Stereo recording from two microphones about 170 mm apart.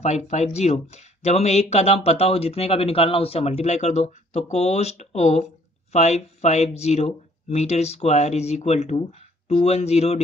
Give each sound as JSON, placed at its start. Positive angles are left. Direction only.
{"t": 0.0, "sound": "speech", "side_deg": 40}